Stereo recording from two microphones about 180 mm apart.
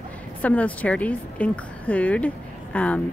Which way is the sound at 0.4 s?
10° left (ahead or behind).